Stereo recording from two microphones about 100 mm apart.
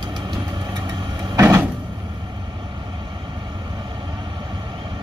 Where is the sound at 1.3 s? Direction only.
30° right (ahead or behind).